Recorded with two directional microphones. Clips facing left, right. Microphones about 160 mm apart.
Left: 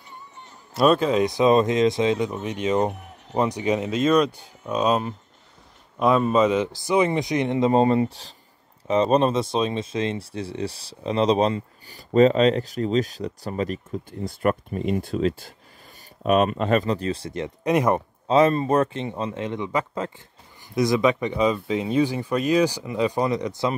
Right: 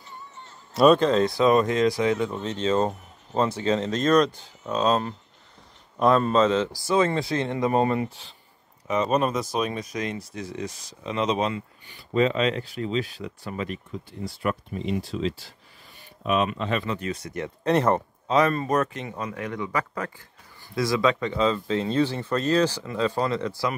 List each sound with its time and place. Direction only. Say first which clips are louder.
0.7 s speech: right 1 dB; 5° left (ahead or behind)
2.9 s a sound: left 2 dB; 70° left (ahead or behind)
3.3 s speech: left 1 dB; 15° left (ahead or behind)
17.6 s speech: left 1 dB; 10° left (ahead or behind)
18.2 s speech: left 5 dB; 25° left (ahead or behind)